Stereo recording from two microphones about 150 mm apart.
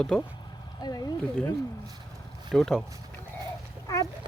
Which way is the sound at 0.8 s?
25° left (ahead or behind).